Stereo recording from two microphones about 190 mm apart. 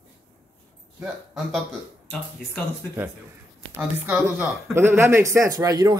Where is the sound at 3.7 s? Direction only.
10° right (ahead or behind).